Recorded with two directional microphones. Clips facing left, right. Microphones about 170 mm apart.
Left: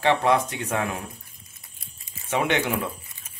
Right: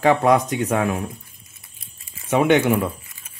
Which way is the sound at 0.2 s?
10° right (ahead or behind).